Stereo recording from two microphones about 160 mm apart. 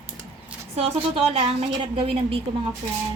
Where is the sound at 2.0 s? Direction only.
35° right (ahead or behind).